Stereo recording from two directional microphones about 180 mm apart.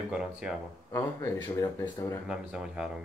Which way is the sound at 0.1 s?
5° right (ahead or behind).